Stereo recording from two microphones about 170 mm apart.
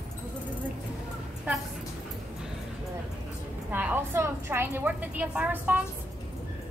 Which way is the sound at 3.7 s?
10° right (ahead or behind).